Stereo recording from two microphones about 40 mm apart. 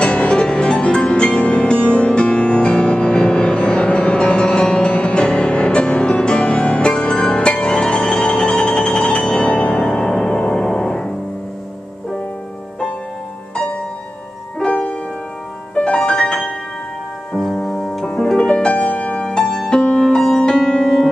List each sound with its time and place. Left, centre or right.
0.0 s music: left
14.6 s music: left
16.1 s music: left
17.5 s keyboard: centre
18.0 s harp: left
18.4 s music: left